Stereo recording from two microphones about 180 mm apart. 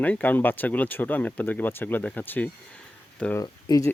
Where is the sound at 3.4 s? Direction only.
20° left (ahead or behind).